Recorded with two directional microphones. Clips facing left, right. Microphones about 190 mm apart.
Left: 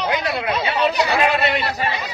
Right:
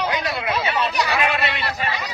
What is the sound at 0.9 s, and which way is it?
Speech, 30° left (ahead or behind).